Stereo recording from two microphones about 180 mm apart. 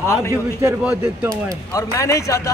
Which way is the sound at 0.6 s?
10° right (ahead or behind).